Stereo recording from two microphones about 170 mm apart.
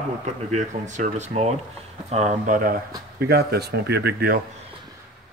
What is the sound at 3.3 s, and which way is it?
Speech, 70° right (ahead or behind).